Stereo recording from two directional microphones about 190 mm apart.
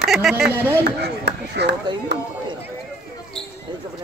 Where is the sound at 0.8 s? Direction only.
60° right (ahead or behind).